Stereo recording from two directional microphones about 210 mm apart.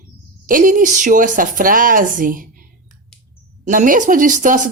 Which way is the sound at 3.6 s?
40° right (ahead or behind).